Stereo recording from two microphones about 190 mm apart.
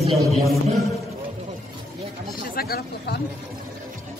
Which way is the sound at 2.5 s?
55° left (ahead or behind).